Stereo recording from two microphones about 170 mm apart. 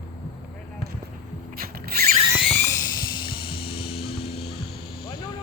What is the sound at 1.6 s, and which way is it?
Mechanisms, 65° right (ahead or behind).